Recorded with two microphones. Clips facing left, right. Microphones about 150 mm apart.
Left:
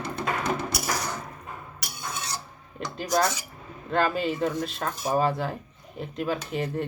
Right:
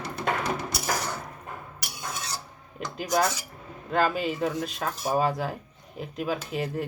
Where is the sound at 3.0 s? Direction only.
5° right (ahead or behind).